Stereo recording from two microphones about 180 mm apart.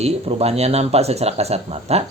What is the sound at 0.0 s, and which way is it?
Speech, 35° right (ahead or behind).